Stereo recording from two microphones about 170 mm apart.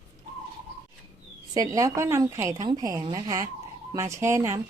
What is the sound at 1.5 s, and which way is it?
A woman's voice, 20° right (ahead or behind).